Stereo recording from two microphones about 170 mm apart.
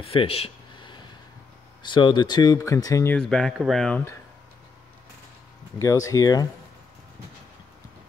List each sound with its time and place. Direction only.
0.0 s a sound: 35° left (ahead or behind)
1.8 s speech: 25° left (ahead or behind)
3.2 s speech: 5° left (ahead or behind)
5.8 s speech: 20° left (ahead or behind)